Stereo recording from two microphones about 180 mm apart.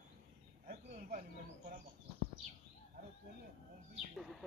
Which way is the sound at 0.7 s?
45° right (ahead or behind).